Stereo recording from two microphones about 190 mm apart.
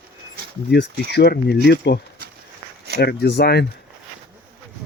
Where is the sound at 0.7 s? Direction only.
60° left (ahead or behind).